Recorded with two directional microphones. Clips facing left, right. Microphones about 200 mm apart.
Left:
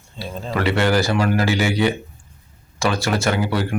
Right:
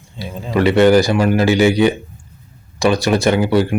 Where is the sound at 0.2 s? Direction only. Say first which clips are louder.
Right 6 dB; 15° right (ahead or behind).